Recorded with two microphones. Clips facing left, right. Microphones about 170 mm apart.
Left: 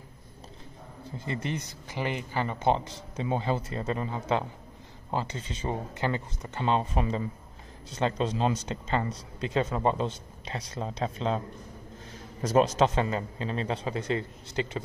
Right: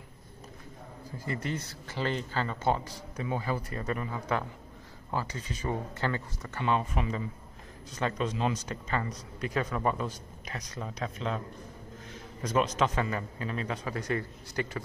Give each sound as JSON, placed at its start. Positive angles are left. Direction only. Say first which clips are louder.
{"t": 1.1, "sound": "speech", "louder": "left 1 dB", "side_deg": 20}